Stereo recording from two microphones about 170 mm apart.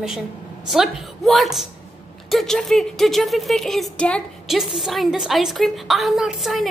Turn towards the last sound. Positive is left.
turn(degrees=0)  # may be behind; listen again after turning